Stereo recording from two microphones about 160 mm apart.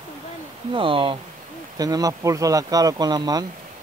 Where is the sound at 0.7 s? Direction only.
35° right (ahead or behind).